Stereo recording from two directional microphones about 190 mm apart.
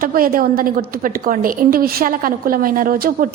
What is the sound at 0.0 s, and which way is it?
A woman's voice, 50° right (ahead or behind).